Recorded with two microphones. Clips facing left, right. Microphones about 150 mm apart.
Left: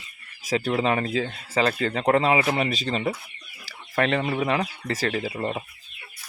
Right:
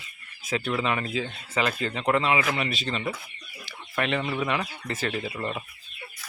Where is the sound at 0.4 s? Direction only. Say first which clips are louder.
Left 4 dB; 40° left (ahead or behind).